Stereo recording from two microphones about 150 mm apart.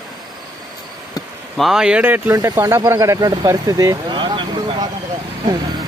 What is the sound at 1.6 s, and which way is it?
Speech, centre (ahead or behind).